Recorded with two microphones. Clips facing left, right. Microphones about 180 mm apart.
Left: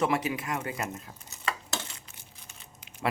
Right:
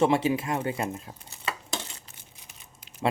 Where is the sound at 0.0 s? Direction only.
25° right (ahead or behind).